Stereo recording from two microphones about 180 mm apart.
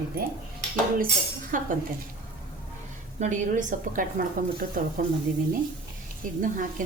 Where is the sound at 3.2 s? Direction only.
45° right (ahead or behind).